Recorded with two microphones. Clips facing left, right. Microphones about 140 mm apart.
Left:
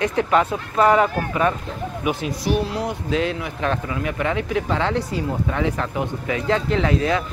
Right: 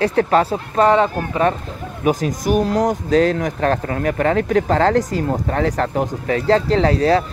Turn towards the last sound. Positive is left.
turn(degrees=-35)  # may be behind; listen again after turning